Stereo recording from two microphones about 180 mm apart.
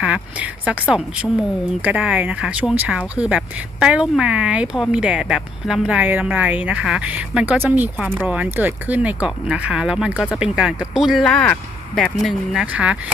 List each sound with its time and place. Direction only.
0.0 s speech: 5° right (ahead or behind)